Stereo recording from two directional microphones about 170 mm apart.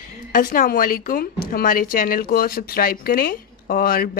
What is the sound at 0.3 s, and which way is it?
Speech, 50° left (ahead or behind).